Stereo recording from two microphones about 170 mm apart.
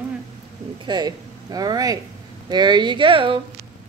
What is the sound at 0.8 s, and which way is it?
Speech, 25° right (ahead or behind).